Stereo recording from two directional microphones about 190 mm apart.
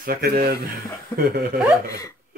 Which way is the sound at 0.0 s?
50° right (ahead or behind).